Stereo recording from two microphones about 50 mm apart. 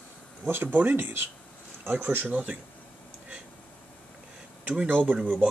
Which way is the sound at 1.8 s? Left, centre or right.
Right.